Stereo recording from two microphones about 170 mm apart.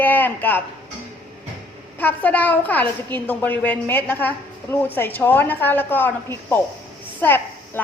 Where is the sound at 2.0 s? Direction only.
10° left (ahead or behind).